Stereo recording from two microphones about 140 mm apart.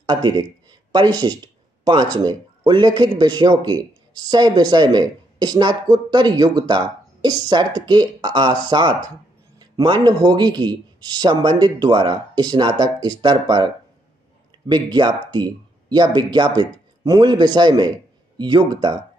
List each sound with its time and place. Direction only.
0.0 s speech: 30° right (ahead or behind)
14.7 s speech: 30° right (ahead or behind)